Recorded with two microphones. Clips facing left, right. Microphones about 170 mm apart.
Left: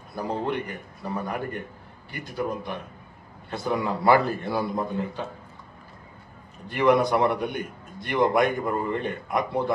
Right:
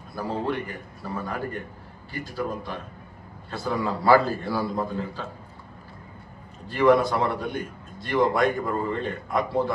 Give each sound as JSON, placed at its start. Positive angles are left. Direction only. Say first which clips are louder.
{"t": 0.1, "sound": "a man's voice", "louder": "even", "side_deg": 20}
{"t": 6.7, "sound": "a man's voice", "louder": "right 1 dB", "side_deg": 20}